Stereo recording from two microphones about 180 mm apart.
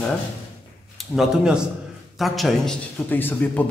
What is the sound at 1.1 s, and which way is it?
A man's voice, centre (ahead or behind).